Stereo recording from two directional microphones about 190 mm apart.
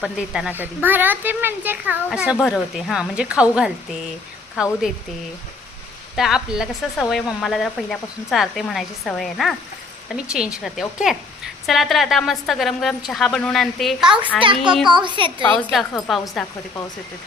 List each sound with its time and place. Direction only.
0.0 s speech: centre (ahead or behind)
6.1 s speech: centre (ahead or behind)
14.8 s a child's voice: 25° right (ahead or behind)
15.5 s speech: centre (ahead or behind)